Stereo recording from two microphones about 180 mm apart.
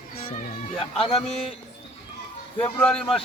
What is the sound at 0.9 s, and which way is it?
Speech, 30° left (ahead or behind).